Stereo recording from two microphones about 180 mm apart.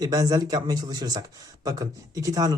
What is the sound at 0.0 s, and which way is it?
Speech, 20° right (ahead or behind).